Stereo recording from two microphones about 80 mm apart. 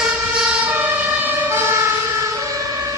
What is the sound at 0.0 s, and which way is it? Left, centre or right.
Emergency vehicle, centre.